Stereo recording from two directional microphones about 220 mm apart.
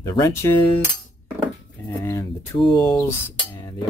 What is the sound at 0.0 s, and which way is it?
Speech, 15° left (ahead or behind).